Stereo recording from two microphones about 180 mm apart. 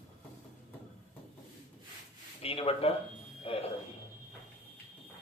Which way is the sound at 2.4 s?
30° left (ahead or behind).